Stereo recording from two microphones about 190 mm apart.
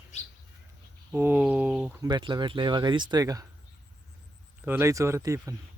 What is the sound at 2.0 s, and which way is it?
Speech, 20° right (ahead or behind).